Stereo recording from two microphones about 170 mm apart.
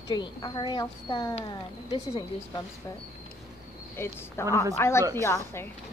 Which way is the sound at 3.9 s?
15° left (ahead or behind).